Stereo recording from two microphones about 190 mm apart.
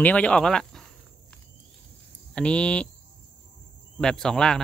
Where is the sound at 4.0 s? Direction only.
5° left (ahead or behind).